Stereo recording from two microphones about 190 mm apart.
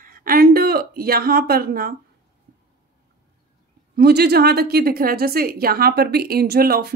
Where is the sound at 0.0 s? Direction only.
50° right (ahead or behind).